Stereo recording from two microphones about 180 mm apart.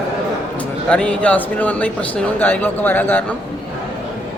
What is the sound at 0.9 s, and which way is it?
Speech, 5° left (ahead or behind).